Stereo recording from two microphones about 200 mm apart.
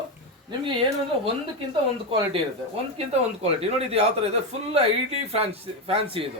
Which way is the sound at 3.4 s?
30° right (ahead or behind).